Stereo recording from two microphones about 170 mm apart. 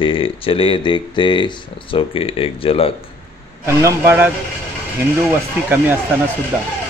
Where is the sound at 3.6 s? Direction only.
15° right (ahead or behind).